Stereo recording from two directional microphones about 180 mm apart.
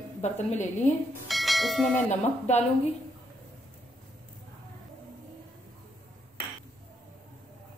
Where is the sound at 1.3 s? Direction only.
Centre (ahead or behind).